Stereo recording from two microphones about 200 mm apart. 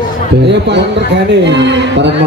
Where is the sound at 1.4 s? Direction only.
60° right (ahead or behind).